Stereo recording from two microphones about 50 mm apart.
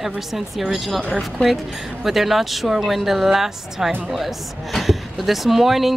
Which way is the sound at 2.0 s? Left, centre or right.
Centre.